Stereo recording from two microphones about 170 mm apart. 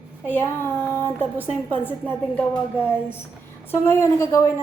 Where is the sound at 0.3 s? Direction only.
15° left (ahead or behind).